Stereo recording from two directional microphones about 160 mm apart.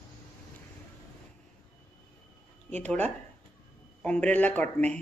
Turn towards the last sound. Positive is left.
turn(degrees=10)  # may be behind; listen again after turning